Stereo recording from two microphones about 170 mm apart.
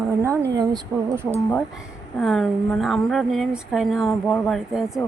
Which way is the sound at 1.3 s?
5° left (ahead or behind).